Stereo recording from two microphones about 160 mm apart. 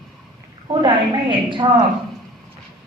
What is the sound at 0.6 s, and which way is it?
A woman's voice, 30° right (ahead or behind).